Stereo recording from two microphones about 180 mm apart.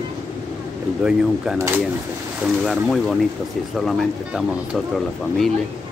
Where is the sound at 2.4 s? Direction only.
Centre (ahead or behind).